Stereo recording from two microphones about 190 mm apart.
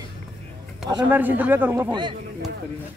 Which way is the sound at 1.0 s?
10° right (ahead or behind).